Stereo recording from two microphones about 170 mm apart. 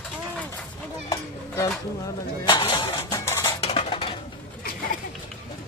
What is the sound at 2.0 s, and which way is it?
Speech, 25° left (ahead or behind).